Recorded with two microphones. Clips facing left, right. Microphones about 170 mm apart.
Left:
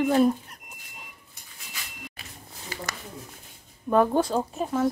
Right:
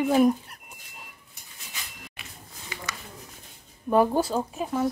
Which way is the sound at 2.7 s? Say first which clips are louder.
Left 3 dB; 35° left (ahead or behind).